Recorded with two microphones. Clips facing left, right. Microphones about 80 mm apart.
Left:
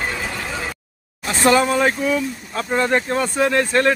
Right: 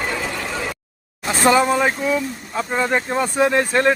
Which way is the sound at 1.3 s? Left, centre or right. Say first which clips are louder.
Even; centre.